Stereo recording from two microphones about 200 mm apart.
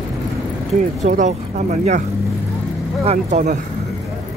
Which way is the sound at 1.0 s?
35° right (ahead or behind).